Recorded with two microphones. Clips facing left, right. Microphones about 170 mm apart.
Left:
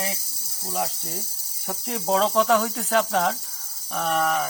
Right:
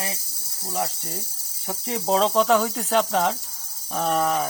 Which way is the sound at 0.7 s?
5° left (ahead or behind).